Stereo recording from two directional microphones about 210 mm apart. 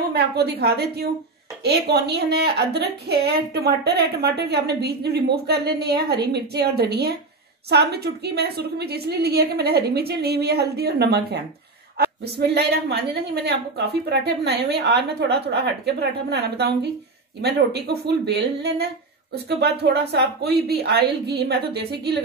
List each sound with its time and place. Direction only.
0.1 s a woman's voice: 50° right (ahead or behind)